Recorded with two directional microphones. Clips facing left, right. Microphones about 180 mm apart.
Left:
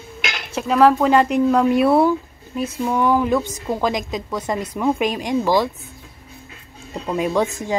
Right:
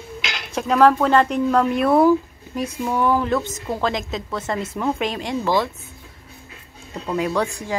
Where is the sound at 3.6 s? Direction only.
15° left (ahead or behind).